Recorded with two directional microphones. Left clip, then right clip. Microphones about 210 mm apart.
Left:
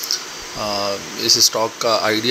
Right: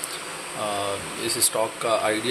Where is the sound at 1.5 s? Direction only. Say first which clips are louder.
Left 5 dB; 20° left (ahead or behind).